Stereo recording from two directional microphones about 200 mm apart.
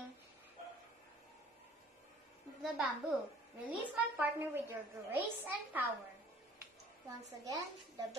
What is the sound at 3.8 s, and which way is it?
A woman's voice, 10° right (ahead or behind).